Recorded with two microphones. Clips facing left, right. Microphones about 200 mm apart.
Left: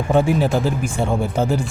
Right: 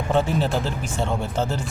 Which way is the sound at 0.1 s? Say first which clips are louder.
Left 5 dB; 10° left (ahead or behind).